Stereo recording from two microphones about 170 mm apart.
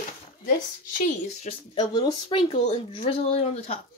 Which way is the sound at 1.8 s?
25° left (ahead or behind).